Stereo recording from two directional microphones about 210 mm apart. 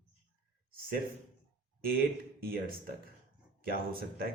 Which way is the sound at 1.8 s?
45° right (ahead or behind).